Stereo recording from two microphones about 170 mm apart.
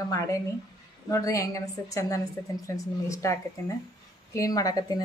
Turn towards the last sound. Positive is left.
turn(degrees=20)  # may be behind; listen again after turning